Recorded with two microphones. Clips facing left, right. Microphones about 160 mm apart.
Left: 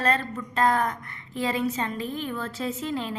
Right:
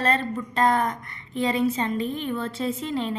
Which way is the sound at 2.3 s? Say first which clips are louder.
Right 3 dB; 25° right (ahead or behind).